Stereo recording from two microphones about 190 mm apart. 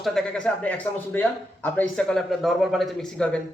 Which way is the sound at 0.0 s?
Centre (ahead or behind).